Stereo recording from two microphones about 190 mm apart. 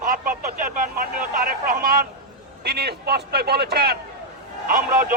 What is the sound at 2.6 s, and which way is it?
A man's voice, 55° right (ahead or behind).